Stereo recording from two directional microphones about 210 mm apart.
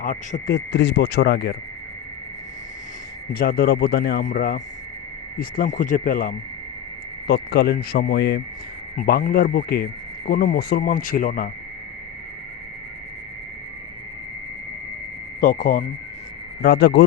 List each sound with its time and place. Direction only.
0.0 s speech: 35° left (ahead or behind)
3.3 s speech: 45° left (ahead or behind)
4.3 s speech: 40° left (ahead or behind)
15.4 s speech: 40° left (ahead or behind)
16.6 s speech: 50° left (ahead or behind)